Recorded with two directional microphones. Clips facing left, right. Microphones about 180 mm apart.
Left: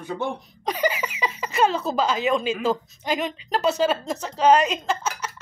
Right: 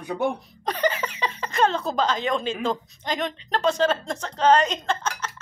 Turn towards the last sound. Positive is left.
turn(degrees=5)  # may be behind; listen again after turning